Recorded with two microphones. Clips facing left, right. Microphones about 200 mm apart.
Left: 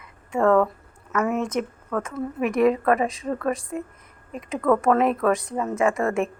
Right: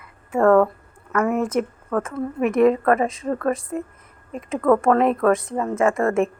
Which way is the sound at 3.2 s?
30° right (ahead or behind).